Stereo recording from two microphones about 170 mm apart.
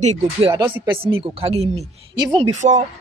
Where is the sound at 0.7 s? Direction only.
10° right (ahead or behind).